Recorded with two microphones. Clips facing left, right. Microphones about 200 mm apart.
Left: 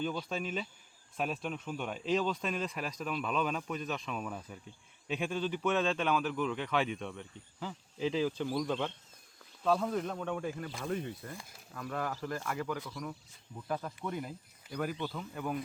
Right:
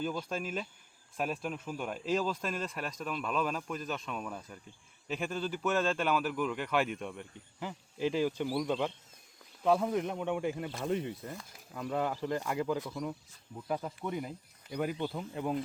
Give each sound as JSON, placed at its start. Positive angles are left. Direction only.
{"t": 0.0, "sound": "a man's voice", "side_deg": -5}
{"t": 14.7, "sound": "speech", "side_deg": -20}